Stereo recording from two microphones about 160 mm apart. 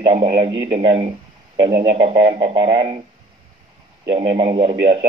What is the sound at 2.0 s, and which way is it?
Speech, 35° right (ahead or behind).